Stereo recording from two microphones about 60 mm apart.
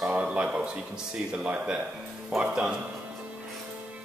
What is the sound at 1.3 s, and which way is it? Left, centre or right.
Speech, centre.